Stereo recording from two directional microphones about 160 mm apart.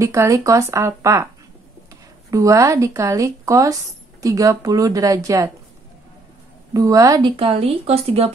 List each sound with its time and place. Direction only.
0.0 s speech: 20° right (ahead or behind)
2.3 s speech: 20° right (ahead or behind)
6.7 s speech: 20° right (ahead or behind); by 8.3 s 40° right (ahead or behind)